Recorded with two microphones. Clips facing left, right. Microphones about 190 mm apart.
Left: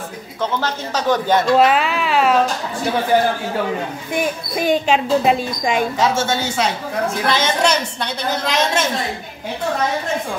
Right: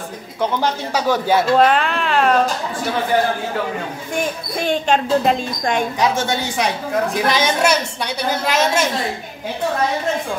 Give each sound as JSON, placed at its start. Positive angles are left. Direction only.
{"t": 0.4, "sound": "a woman's voice", "side_deg": -10}
{"t": 1.6, "sound": "speech", "side_deg": 5}
{"t": 4.1, "sound": "speech", "side_deg": 10}
{"t": 5.9, "sound": "a woman's voice", "side_deg": -15}